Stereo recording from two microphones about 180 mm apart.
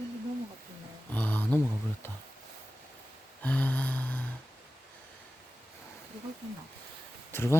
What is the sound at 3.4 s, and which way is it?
Humming, 10° left (ahead or behind).